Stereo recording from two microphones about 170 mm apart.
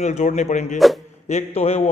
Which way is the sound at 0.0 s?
45° left (ahead or behind).